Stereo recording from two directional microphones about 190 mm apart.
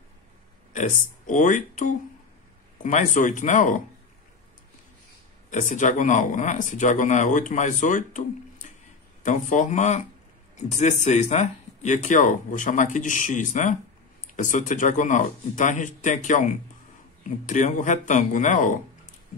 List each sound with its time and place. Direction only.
0.7 s speech: 40° left (ahead or behind)
5.5 s speech: 40° left (ahead or behind)